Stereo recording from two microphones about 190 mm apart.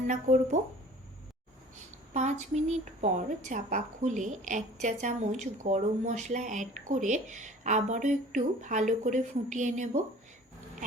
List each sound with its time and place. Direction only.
0.1 s a woman's voice: 40° right (ahead or behind)
2.1 s a woman's voice: 35° right (ahead or behind)